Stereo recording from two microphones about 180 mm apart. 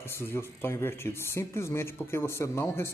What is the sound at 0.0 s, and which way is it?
Speech, 15° left (ahead or behind).